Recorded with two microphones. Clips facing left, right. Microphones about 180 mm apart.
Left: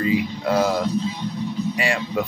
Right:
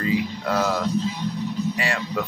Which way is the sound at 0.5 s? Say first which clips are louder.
Left 4 dB; 15° left (ahead or behind).